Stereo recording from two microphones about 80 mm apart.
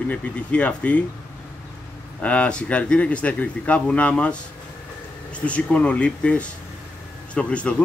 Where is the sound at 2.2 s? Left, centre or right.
Centre.